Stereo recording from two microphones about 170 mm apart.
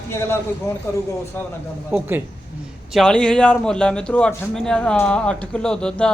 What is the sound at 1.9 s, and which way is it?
Speech, 10° right (ahead or behind).